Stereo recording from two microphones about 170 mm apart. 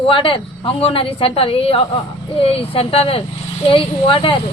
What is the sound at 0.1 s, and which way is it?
Speech, 30° left (ahead or behind).